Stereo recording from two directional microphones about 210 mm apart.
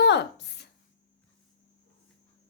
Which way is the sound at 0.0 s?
55° left (ahead or behind).